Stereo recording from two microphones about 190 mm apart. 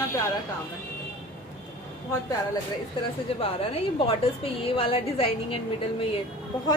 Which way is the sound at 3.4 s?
30° left (ahead or behind).